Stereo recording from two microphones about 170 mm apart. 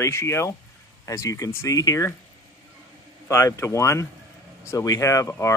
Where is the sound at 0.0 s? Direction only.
15° left (ahead or behind).